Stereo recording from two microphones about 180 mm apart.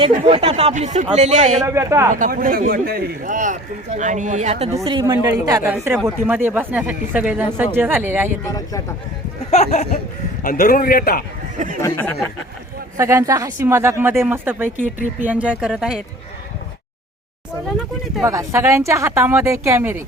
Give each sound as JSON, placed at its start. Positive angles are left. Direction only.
{"t": 0.3, "sound": "speech", "side_deg": -30}
{"t": 1.6, "sound": "speech", "side_deg": -15}
{"t": 2.1, "sound": "speech", "side_deg": -50}
{"t": 4.9, "sound": "speech", "side_deg": -25}
{"t": 9.5, "sound": "speech", "side_deg": 35}
{"t": 10.4, "sound": "a man's voice", "side_deg": 50}
{"t": 11.5, "sound": "speech", "side_deg": -45}
{"t": 11.8, "sound": "speech", "side_deg": 15}
{"t": 13.0, "sound": "speech", "side_deg": -15}
{"t": 18.2, "sound": "speech", "side_deg": -15}